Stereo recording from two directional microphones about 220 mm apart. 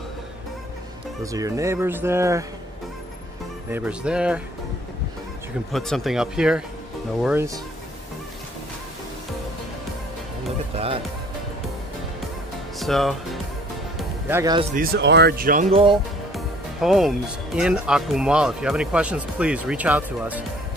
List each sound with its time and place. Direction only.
1.2 s speech: 15° right (ahead or behind)
3.7 s speech: 5° right (ahead or behind)
5.7 s speech: centre (ahead or behind)
12.7 s speech: centre (ahead or behind)
14.3 s speech: 15° right (ahead or behind)
14.8 s speech: 45° right (ahead or behind)
15.7 s speech: 25° right (ahead or behind)
16.3 s music: centre (ahead or behind)
17.6 s speech: 5° right (ahead or behind)